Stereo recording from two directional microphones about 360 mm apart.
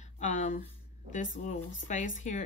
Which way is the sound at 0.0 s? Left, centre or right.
Centre.